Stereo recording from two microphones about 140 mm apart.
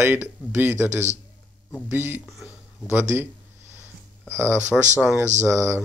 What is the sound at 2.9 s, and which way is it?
Speech, 15° right (ahead or behind).